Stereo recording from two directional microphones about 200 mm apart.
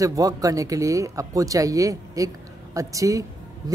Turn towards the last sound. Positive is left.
turn(degrees=-15)  # may be behind; listen again after turning